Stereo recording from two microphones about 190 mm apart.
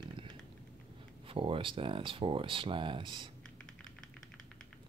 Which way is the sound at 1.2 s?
30° right (ahead or behind).